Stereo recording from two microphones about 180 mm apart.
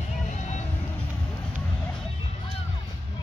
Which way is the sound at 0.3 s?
40° left (ahead or behind).